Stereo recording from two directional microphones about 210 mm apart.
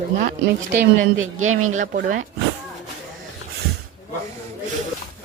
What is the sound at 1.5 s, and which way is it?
Speech, 80° right.